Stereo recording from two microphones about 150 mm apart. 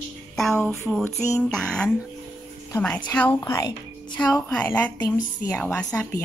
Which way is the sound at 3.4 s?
20° left (ahead or behind).